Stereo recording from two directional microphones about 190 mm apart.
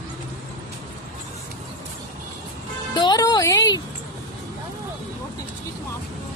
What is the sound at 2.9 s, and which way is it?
Music, 20° left (ahead or behind).